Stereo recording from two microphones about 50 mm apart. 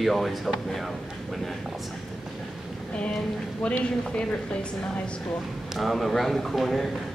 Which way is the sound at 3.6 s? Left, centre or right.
Left.